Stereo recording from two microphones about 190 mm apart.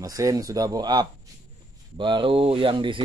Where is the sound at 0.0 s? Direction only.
20° right (ahead or behind).